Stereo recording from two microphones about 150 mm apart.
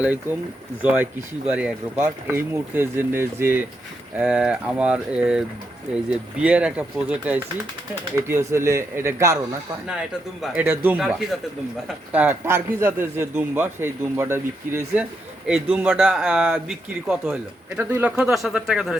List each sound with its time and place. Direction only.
0.8 s a man's voice: 10° right (ahead or behind)
10.4 s a man's voice: 10° right (ahead or behind)